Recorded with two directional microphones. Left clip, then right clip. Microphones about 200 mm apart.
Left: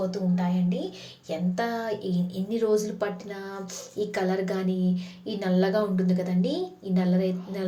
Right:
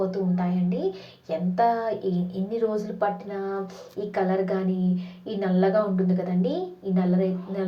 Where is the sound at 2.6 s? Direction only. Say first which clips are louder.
Left 1 dB; 25° left (ahead or behind).